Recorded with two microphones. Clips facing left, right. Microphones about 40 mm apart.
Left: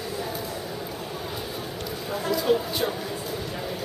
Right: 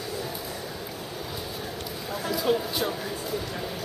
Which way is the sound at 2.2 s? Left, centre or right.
Centre.